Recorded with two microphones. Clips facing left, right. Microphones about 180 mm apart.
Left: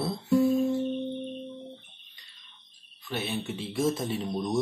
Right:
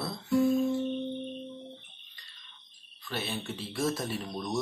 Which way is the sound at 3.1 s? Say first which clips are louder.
Left 3 dB; 10° left (ahead or behind).